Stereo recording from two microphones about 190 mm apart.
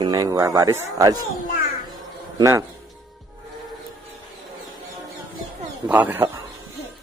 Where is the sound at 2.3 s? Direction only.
15° right (ahead or behind).